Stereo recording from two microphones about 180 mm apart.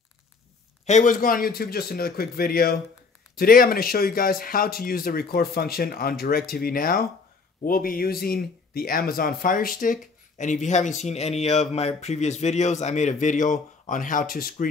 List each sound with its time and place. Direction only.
0.8 s speech: 45° left (ahead or behind)